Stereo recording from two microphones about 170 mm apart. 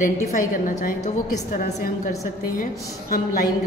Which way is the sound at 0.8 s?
45° left (ahead or behind).